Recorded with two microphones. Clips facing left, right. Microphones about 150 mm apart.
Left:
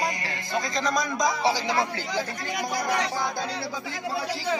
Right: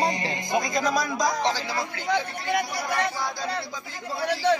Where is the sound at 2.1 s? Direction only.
65° right (ahead or behind).